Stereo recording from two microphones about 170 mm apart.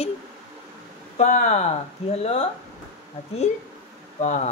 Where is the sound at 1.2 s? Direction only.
45° left (ahead or behind).